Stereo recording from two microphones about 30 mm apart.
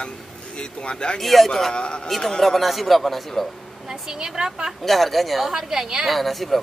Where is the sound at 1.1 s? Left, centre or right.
Centre.